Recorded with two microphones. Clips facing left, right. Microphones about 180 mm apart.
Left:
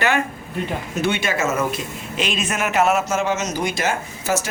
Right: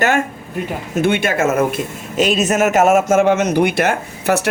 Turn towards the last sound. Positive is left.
turn(degrees=-60)  # may be behind; listen again after turning